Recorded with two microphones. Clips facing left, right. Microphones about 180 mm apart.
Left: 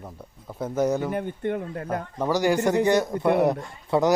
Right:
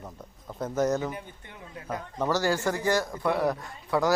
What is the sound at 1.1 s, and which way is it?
Speech, 60° left (ahead or behind).